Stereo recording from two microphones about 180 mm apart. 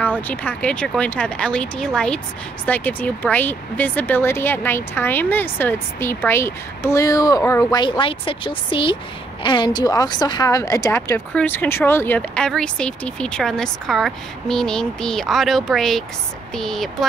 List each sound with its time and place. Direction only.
0.3 s a woman's voice: 10° left (ahead or behind)
8.0 s a woman's voice: 30° left (ahead or behind); by 16.9 s centre (ahead or behind)